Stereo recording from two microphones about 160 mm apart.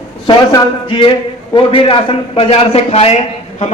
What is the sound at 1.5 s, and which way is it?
A man's voice, 35° left (ahead or behind).